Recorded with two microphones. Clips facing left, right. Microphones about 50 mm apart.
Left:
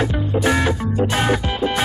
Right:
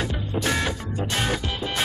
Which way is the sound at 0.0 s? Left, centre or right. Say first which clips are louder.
Left 7 dB; centre.